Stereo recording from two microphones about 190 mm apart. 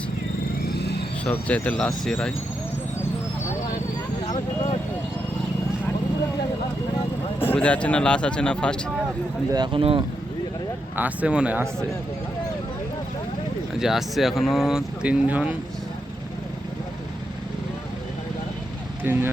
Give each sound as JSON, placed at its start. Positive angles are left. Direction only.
{"t": 0.6, "sound": "a sound", "side_deg": 60}
{"t": 1.2, "sound": "speech", "side_deg": 5}
{"t": 7.3, "sound": "speech", "side_deg": 10}
{"t": 9.5, "sound": "speech", "side_deg": -25}
{"t": 10.9, "sound": "speech", "side_deg": -10}
{"t": 13.7, "sound": "speech", "side_deg": 0}
{"t": 19.0, "sound": "speech", "side_deg": -10}